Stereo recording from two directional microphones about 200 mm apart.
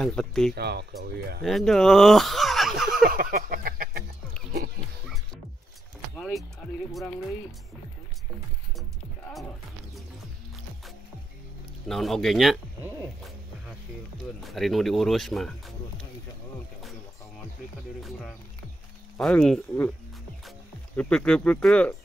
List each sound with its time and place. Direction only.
0.0 s speech: 5° left (ahead or behind)
0.6 s speech: 55° right (ahead or behind)
1.4 s speech: centre (ahead or behind)
3.1 s a sound: 45° right (ahead or behind)
6.1 s music: centre (ahead or behind)
6.9 s speech: centre (ahead or behind)
11.9 s music: centre (ahead or behind)
14.4 s speech: centre (ahead or behind)
19.1 s speech: 5° left (ahead or behind)